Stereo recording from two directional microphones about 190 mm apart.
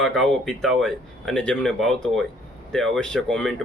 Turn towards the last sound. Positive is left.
turn(degrees=5)  # may be behind; listen again after turning